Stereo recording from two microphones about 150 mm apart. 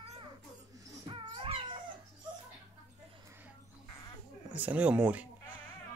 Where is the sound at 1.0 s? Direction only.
35° right (ahead or behind).